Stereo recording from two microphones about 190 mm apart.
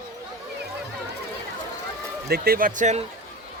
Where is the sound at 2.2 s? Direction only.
55° right (ahead or behind).